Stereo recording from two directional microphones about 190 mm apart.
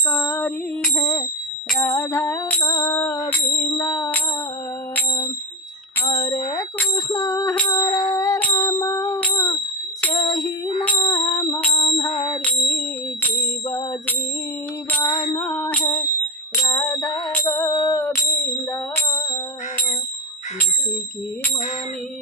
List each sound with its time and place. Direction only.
0.1 s music: 10° left (ahead or behind)
6.0 s bicycle bell: 15° left (ahead or behind)
7.7 s music: 20° left (ahead or behind)
8.5 s a sound: 20° left (ahead or behind)
11.0 s music: 20° left (ahead or behind)
12.4 s music: 5° left (ahead or behind)
15.3 s music: 10° left (ahead or behind)